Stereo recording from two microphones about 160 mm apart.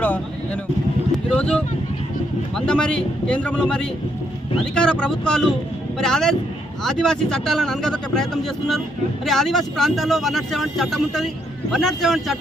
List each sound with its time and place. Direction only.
0.0 s vehicle: 10° left (ahead or behind)
1.3 s a sound: 5° left (ahead or behind)
2.6 s speech: 5° left (ahead or behind)